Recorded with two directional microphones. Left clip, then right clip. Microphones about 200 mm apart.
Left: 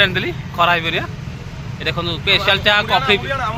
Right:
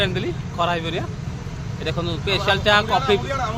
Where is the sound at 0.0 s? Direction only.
10° left (ahead or behind).